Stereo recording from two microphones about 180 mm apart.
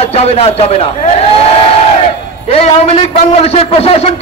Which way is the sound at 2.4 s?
35° left (ahead or behind).